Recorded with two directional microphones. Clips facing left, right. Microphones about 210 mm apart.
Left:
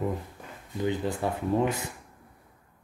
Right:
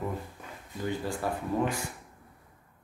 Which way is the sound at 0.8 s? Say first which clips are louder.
Left 4 dB; 20° left (ahead or behind).